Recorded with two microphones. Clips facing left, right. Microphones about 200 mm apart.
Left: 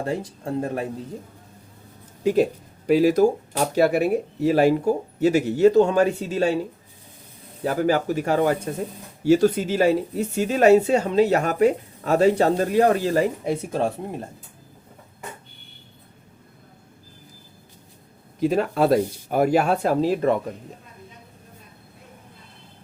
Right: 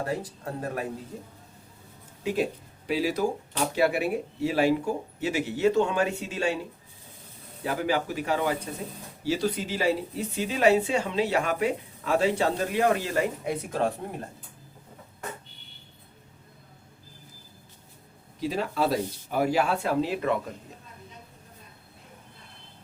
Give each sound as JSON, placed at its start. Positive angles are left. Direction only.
{"t": 0.0, "sound": "speech", "side_deg": 25}
{"t": 2.2, "sound": "speech", "side_deg": 45}
{"t": 7.6, "sound": "speech", "side_deg": 45}
{"t": 14.0, "sound": "speech", "side_deg": 20}
{"t": 18.3, "sound": "speech", "side_deg": 55}